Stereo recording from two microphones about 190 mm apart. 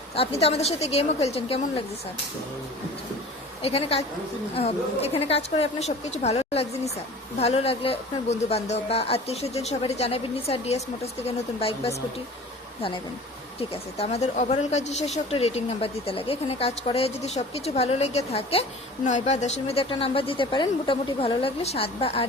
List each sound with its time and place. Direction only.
0.2 s speech: 35° left (ahead or behind)
3.6 s speech: 30° left (ahead or behind)
13.6 s speech: 35° left (ahead or behind)